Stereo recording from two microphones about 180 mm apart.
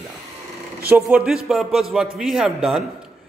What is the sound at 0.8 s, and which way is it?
A man's voice, 10° right (ahead or behind).